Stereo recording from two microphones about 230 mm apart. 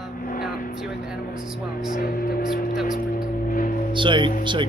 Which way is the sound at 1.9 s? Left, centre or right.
Left.